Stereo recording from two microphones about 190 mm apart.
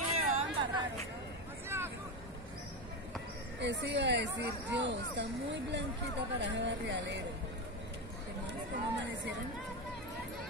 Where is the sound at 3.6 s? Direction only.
65° right (ahead or behind).